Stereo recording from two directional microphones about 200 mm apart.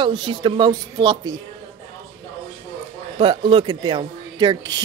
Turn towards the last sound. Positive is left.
turn(degrees=-20)  # may be behind; listen again after turning